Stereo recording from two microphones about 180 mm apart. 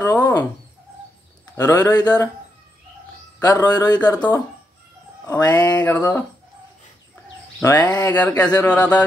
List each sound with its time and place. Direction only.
0.0 s dog: 20° left (ahead or behind)
1.5 s a man's voice: 15° left (ahead or behind)
3.3 s a man's voice: 20° left (ahead or behind)
5.2 s a man's voice: 20° left (ahead or behind)
7.6 s a man's voice: 20° left (ahead or behind)
7.9 s speech: 10° left (ahead or behind)